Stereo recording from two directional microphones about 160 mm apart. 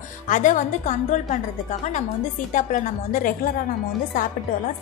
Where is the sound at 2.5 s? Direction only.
55° left (ahead or behind).